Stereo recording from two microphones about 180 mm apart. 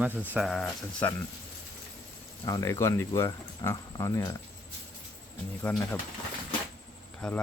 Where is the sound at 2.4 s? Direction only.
20° left (ahead or behind).